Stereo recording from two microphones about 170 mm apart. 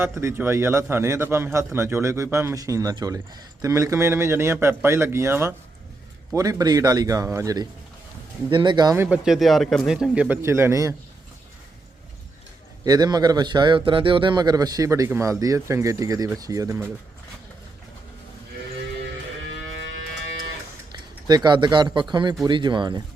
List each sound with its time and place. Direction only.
0.0 s a man's voice: 15° right (ahead or behind)
9.0 s a man's voice: 5° right (ahead or behind)
12.8 s a man's voice: 25° right (ahead or behind)
21.2 s a man's voice: 25° right (ahead or behind)